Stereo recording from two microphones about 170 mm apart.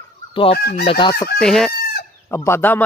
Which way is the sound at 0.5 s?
65° left (ahead or behind).